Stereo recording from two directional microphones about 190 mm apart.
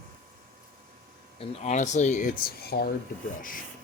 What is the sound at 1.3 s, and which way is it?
Speech, 35° left (ahead or behind).